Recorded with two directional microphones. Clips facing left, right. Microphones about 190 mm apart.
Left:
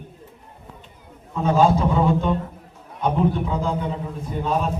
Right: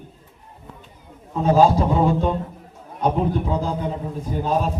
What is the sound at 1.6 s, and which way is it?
A man's voice, 35° right (ahead or behind).